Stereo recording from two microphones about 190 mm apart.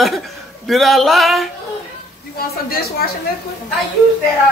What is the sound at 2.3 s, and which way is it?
Speech, 55° left (ahead or behind).